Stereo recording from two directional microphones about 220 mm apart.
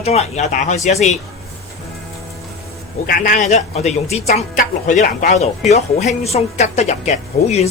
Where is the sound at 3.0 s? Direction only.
40° left (ahead or behind).